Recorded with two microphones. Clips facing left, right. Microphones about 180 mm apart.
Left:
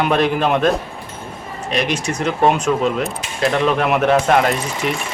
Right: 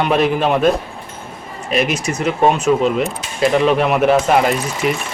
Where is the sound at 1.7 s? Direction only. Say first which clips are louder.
Right 2 dB; 5° right (ahead or behind).